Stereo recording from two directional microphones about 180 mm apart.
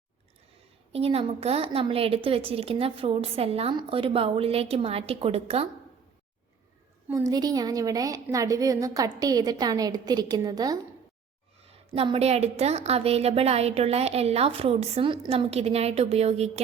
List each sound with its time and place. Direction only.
0.9 s a woman's voice: 35° right (ahead or behind)
7.1 s a woman's voice: 20° right (ahead or behind)
11.9 s a woman's voice: 30° right (ahead or behind)